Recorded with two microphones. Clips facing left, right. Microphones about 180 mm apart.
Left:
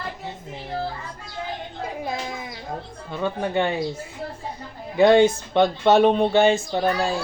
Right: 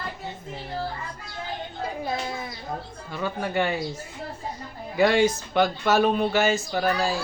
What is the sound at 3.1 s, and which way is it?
Speech, 20° left (ahead or behind).